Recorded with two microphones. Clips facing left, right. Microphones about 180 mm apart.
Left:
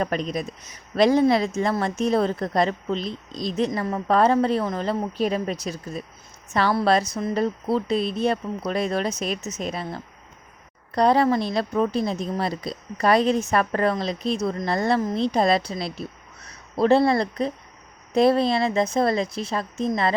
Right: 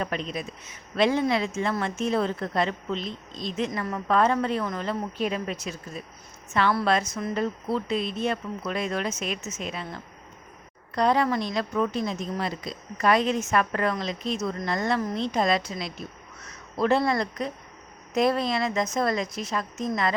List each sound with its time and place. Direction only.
0.0 s a woman's voice: 40° left (ahead or behind)